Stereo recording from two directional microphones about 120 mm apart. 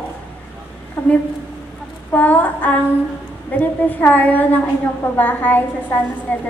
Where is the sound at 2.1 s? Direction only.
15° left (ahead or behind).